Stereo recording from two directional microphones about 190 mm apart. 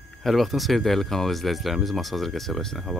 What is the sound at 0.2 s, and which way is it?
Speech, centre (ahead or behind).